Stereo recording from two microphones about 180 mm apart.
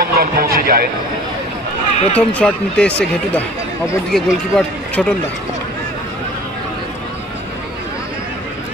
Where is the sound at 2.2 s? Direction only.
5° left (ahead or behind).